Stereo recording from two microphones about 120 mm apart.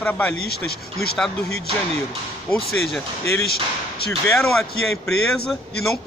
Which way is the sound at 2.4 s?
5° left (ahead or behind).